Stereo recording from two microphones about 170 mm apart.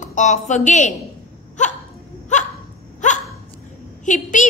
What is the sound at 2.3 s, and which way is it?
Hiccup, 45° left (ahead or behind).